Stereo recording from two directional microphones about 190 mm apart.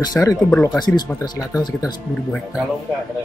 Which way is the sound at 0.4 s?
5° left (ahead or behind).